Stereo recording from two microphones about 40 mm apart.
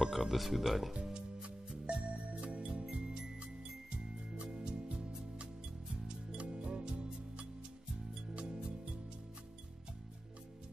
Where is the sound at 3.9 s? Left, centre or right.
Right.